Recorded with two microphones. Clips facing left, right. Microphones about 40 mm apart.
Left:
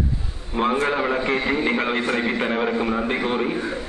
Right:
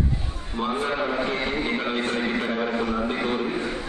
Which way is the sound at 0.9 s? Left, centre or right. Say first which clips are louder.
Left 3 dB; centre.